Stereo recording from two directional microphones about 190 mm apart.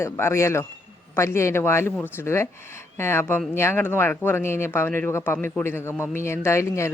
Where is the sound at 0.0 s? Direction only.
15° left (ahead or behind).